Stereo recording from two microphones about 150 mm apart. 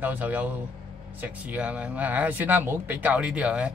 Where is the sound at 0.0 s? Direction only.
10° right (ahead or behind).